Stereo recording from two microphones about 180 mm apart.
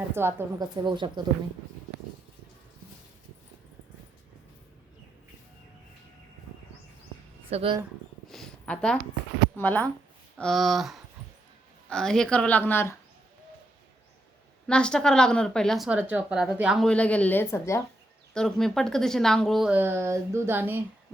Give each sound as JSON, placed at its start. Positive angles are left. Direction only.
{"t": 0.1, "sound": "a woman's voice", "side_deg": -15}
{"t": 0.9, "sound": "speech", "side_deg": -25}
{"t": 7.5, "sound": "speech", "side_deg": -30}
{"t": 8.3, "sound": "a sound", "side_deg": 5}
{"t": 9.6, "sound": "a woman's voice", "side_deg": 10}
{"t": 14.7, "sound": "a woman's voice", "side_deg": 5}
{"t": 18.3, "sound": "a woman's voice", "side_deg": 5}